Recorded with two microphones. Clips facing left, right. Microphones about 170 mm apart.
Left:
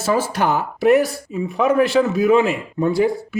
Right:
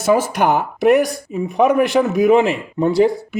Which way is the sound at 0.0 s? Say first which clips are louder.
Right 4 dB; 15° right (ahead or behind).